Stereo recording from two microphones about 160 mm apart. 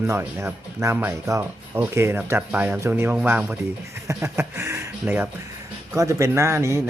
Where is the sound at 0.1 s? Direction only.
15° right (ahead or behind).